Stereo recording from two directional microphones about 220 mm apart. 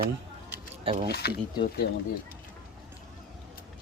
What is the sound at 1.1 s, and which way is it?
Speech, 45° left (ahead or behind).